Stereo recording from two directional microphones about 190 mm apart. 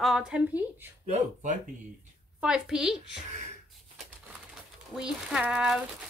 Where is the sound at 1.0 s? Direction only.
40° right (ahead or behind).